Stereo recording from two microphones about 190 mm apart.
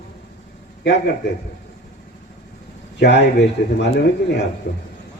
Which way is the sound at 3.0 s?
65° left (ahead or behind).